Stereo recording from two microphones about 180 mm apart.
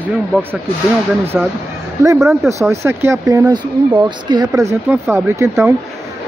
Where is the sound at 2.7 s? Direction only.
15° right (ahead or behind).